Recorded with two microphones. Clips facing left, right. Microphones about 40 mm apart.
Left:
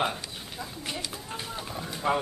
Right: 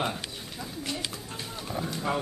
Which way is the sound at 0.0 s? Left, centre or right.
Centre.